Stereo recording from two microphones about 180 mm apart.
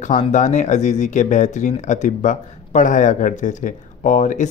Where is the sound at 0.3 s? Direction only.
40° left (ahead or behind).